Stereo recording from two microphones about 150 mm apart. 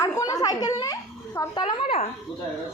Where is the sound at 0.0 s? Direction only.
20° left (ahead or behind); by 2.0 s 35° left (ahead or behind).